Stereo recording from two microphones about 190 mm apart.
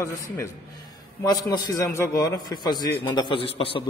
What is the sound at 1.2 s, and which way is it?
A man's voice, 20° left (ahead or behind).